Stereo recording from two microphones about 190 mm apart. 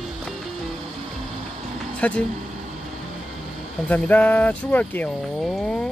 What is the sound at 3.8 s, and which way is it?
Speech, 10° left (ahead or behind).